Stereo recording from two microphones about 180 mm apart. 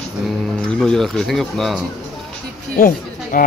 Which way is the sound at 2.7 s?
50° left (ahead or behind).